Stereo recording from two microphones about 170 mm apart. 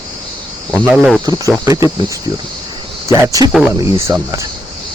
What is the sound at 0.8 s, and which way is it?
Speech, 5° right (ahead or behind).